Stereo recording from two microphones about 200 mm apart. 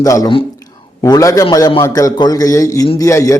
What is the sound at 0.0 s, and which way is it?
A man's voice, 15° left (ahead or behind).